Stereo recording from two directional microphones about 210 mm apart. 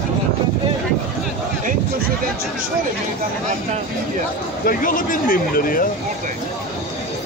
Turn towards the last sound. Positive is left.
turn(degrees=45)  # may be behind; listen again after turning